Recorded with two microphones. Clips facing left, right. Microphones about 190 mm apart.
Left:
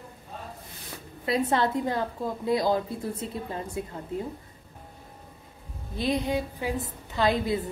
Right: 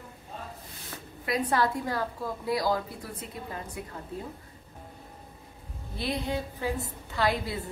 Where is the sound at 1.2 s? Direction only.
25° left (ahead or behind).